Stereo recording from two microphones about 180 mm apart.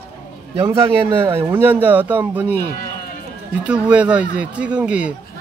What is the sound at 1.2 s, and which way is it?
Speech, 10° right (ahead or behind).